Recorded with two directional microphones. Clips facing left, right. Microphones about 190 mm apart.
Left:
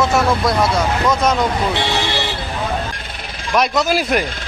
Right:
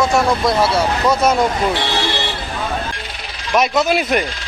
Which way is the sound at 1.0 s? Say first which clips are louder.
Right 2 dB; 10° right (ahead or behind).